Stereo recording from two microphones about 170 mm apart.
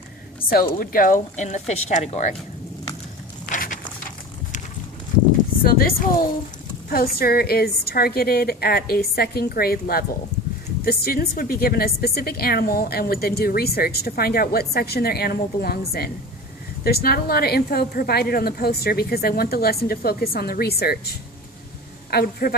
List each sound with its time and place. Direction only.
0.5 s speech: 60° left (ahead or behind); by 2.3 s 40° left (ahead or behind)
3.5 s a sound: 50° left (ahead or behind)
5.6 s a woman's voice: 60° left (ahead or behind)